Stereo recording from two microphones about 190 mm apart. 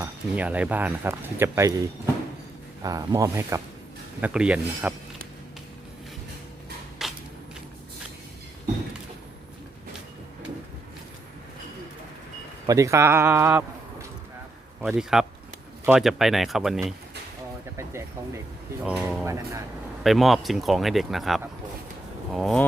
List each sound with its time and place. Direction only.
0.0 s speech: 10° right (ahead or behind)
7.0 s a sound: centre (ahead or behind)
12.6 s speech: 15° right (ahead or behind)
14.8 s speech: centre (ahead or behind)
18.9 s speech: 5° right (ahead or behind)
20.1 s speech: centre (ahead or behind)